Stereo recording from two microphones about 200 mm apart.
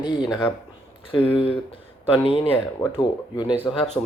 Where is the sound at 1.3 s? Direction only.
25° left (ahead or behind).